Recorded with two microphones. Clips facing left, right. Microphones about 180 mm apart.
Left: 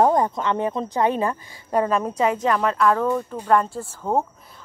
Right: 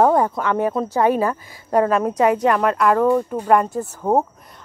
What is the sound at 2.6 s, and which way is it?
Speech, 10° right (ahead or behind).